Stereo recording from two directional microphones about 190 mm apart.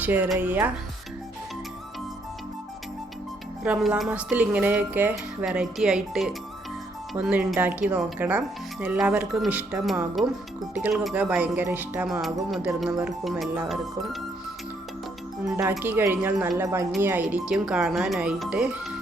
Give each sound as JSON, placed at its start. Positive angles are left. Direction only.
{"t": 0.0, "sound": "speech", "side_deg": -10}
{"t": 3.6, "sound": "speech", "side_deg": -5}
{"t": 15.4, "sound": "speech", "side_deg": -10}